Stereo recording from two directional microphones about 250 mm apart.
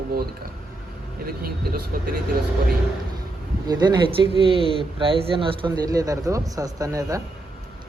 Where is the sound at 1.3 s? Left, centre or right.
Right.